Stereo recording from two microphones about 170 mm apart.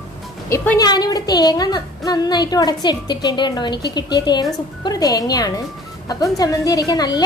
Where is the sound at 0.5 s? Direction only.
20° left (ahead or behind).